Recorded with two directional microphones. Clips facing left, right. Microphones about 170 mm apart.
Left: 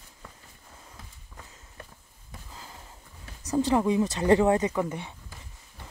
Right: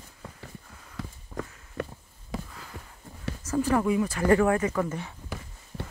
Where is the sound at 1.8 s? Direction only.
90° right.